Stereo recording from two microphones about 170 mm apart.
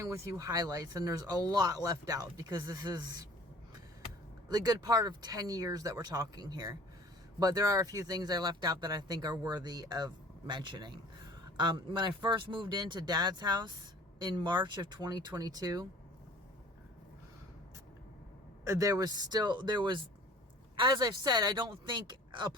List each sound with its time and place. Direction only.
0.0 s speech: 20° right (ahead or behind)
4.4 s speech: 25° right (ahead or behind)
18.6 s speech: 20° right (ahead or behind)